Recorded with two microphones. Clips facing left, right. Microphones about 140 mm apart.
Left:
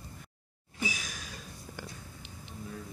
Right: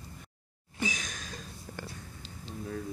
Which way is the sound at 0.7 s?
5° left (ahead or behind).